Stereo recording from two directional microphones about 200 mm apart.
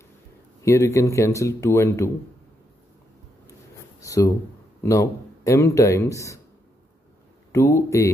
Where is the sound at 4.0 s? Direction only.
15° left (ahead or behind).